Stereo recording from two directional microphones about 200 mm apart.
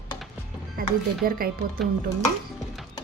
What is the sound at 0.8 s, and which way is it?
Speech, 45° right (ahead or behind).